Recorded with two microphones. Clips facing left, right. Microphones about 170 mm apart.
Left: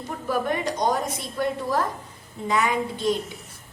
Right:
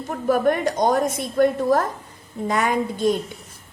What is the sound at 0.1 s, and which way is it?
A woman's voice, 50° right (ahead or behind).